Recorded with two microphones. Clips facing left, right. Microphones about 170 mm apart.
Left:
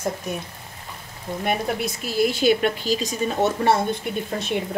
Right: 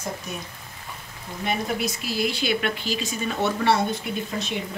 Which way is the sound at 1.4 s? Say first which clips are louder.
Left 1 dB; 50° left (ahead or behind).